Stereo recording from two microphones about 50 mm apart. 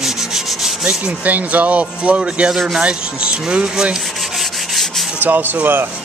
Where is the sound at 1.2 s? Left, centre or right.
Right.